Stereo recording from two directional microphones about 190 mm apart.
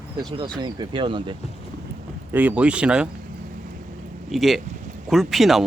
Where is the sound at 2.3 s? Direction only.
10° right (ahead or behind).